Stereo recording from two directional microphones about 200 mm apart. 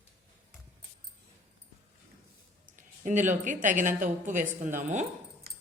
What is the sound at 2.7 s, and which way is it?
A woman's voice, 40° right (ahead or behind).